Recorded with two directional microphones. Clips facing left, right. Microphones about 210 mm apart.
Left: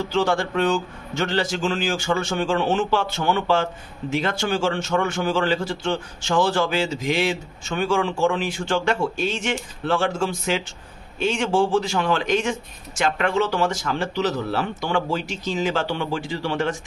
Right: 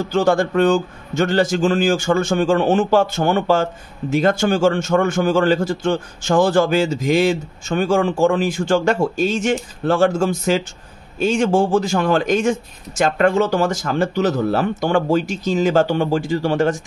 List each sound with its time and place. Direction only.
0.1 s a man's voice: 45° right (ahead or behind)